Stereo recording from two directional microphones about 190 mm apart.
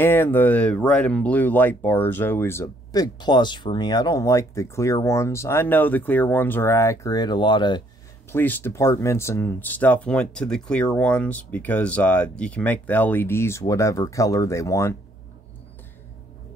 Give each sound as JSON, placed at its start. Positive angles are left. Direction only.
{"t": 0.0, "sound": "speech", "side_deg": 10}
{"t": 8.3, "sound": "speech", "side_deg": 10}